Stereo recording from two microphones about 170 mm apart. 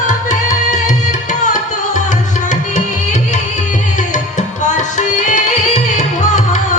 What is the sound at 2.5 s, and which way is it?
Tabla, 45° left (ahead or behind).